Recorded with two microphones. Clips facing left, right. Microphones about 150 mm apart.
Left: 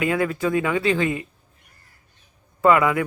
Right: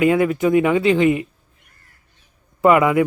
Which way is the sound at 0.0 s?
20° right (ahead or behind).